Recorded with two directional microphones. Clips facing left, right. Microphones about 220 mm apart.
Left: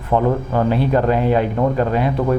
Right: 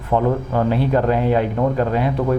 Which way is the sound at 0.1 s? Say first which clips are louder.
Left 1 dB; 25° left (ahead or behind).